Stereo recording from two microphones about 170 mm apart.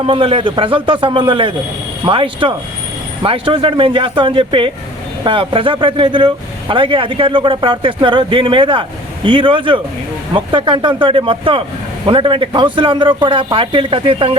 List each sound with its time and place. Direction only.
0.0 s speech: 30° right (ahead or behind)